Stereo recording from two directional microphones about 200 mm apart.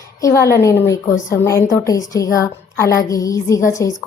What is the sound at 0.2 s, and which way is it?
A woman's voice, 15° left (ahead or behind).